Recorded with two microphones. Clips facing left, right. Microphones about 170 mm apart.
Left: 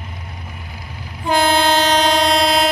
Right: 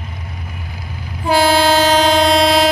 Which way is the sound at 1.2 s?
5° right (ahead or behind).